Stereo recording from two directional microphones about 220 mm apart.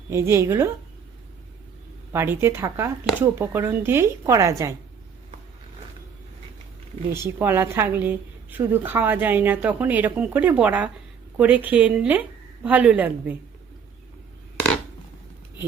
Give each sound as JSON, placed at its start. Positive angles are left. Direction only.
{"t": 0.1, "sound": "a woman's voice", "side_deg": -10}
{"t": 2.1, "sound": "a woman's voice", "side_deg": -10}
{"t": 7.1, "sound": "a woman's voice", "side_deg": -10}